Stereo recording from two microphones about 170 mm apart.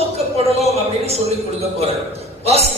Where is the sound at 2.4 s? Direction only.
35° right (ahead or behind).